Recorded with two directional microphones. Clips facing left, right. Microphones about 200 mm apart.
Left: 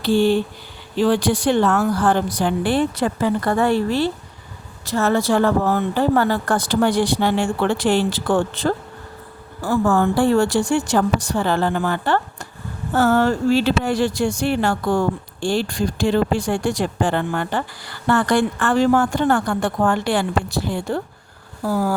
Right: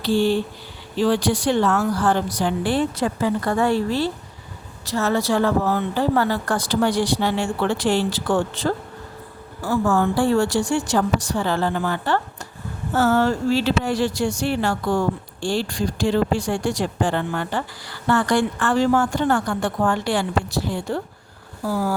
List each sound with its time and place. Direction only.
0.0 s speech: 55° left (ahead or behind)
4.9 s speech: 55° left (ahead or behind)